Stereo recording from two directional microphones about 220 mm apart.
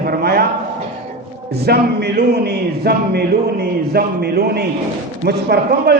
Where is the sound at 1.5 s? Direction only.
45° right (ahead or behind).